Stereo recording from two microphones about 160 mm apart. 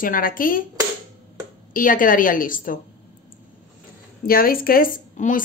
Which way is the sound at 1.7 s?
60° left (ahead or behind).